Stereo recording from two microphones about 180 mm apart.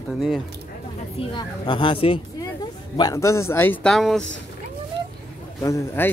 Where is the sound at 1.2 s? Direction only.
30° left (ahead or behind); by 3.9 s 10° left (ahead or behind).